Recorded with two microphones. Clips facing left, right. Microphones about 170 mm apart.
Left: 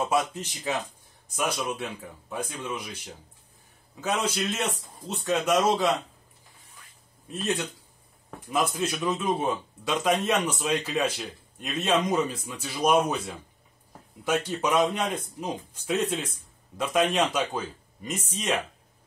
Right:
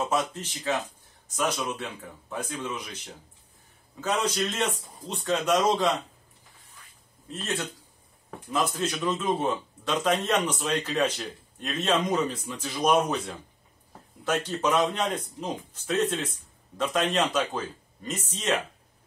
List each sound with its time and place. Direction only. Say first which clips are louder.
0.1 s a man's voice: left 2 dB; 10° left (ahead or behind)
4.0 s a man's voice: right 1 dB; 10° left (ahead or behind)
7.2 s a man's voice: left 3 dB; 15° left (ahead or behind)
8.7 s a man's voice: even; 10° left (ahead or behind)